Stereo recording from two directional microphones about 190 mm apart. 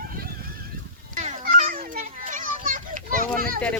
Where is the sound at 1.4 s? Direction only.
50° right (ahead or behind).